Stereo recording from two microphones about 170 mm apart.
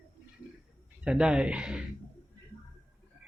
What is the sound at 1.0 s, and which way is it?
Speech, 5° right (ahead or behind).